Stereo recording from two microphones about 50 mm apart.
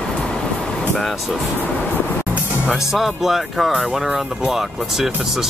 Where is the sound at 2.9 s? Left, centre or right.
Centre.